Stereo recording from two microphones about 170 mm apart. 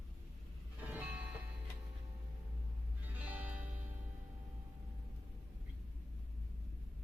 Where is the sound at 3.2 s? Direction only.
10° right (ahead or behind).